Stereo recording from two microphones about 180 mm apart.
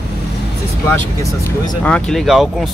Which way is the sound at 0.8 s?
15° left (ahead or behind).